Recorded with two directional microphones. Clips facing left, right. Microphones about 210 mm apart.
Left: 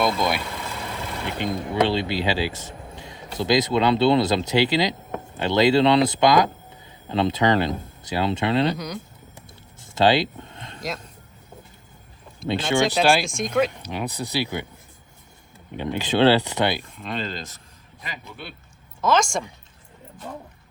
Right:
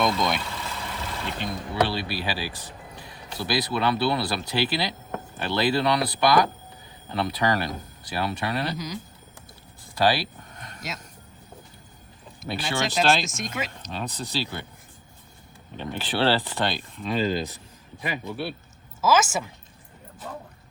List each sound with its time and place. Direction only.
0.0 s speech: 5° left (ahead or behind)
1.3 s speech: 20° left (ahead or behind)
8.7 s a woman's voice: centre (ahead or behind)
9.9 s a sound: 25° left (ahead or behind)
12.7 s speech: 15° left (ahead or behind)
13.3 s a woman's voice: centre (ahead or behind)
13.8 s speech: 10° left (ahead or behind)
15.7 s speech: 15° left (ahead or behind)
16.9 s a woman's voice: centre (ahead or behind)
20.2 s speech: 15° left (ahead or behind)